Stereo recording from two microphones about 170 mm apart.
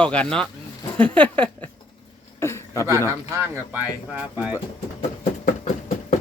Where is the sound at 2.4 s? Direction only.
15° left (ahead or behind).